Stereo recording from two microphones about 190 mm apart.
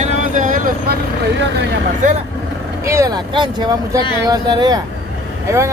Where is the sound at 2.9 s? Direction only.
20° right (ahead or behind).